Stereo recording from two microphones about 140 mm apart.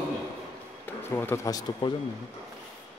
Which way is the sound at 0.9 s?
15° left (ahead or behind).